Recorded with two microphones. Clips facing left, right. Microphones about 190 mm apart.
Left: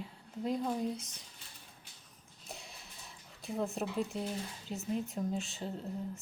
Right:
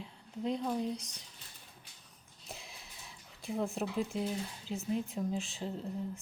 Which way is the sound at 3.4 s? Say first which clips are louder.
Right 1 dB; centre (ahead or behind).